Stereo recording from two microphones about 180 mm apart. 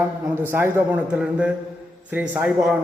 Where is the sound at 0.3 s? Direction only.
10° right (ahead or behind).